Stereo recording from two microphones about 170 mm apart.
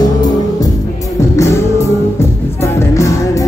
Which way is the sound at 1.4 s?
15° left (ahead or behind).